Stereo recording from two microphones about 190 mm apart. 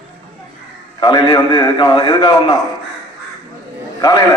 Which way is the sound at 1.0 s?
25° left (ahead or behind).